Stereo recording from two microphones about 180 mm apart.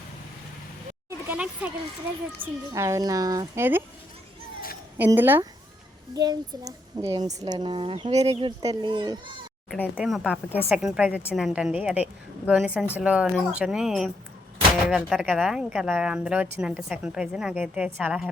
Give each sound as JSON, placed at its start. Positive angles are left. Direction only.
{"t": 1.3, "sound": "speech", "side_deg": -10}
{"t": 4.9, "sound": "speech", "side_deg": -10}
{"t": 6.1, "sound": "speech", "side_deg": -20}
{"t": 9.6, "sound": "speech", "side_deg": 10}
{"t": 9.9, "sound": "a woman's voice", "side_deg": 0}